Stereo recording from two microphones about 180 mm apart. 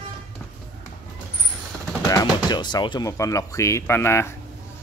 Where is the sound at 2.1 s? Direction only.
25° left (ahead or behind).